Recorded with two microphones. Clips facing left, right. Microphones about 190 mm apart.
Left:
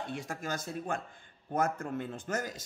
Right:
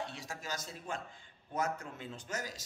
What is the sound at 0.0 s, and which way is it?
Speech, 55° left (ahead or behind).